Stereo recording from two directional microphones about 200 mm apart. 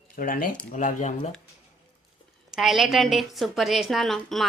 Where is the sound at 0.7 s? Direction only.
40° left (ahead or behind).